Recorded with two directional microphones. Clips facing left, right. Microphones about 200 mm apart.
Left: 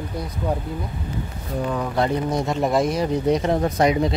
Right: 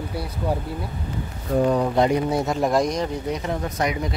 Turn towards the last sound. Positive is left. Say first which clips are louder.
# left 6 dB
turn(degrees=30)  # may be behind; listen again after turning